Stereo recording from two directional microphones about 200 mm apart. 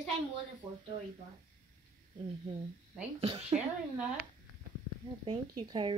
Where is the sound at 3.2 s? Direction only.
30° right (ahead or behind).